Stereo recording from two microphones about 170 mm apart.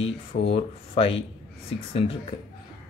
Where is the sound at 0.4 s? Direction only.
35° left (ahead or behind).